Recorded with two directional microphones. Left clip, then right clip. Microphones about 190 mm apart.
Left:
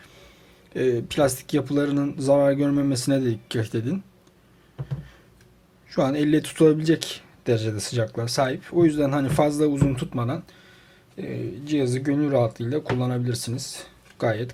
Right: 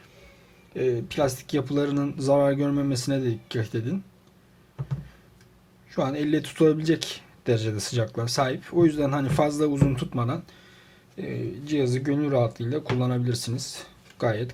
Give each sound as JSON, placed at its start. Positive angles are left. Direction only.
{"t": 0.7, "sound": "speech", "side_deg": 25}
{"t": 5.9, "sound": "speech", "side_deg": 20}